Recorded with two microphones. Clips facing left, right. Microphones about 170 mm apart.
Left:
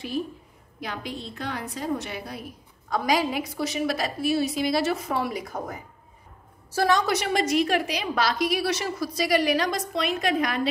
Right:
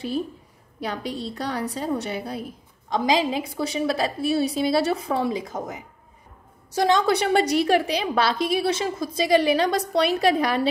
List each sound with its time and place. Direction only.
0.8 s a woman's voice: 35° right (ahead or behind)
6.7 s a woman's voice: 20° right (ahead or behind)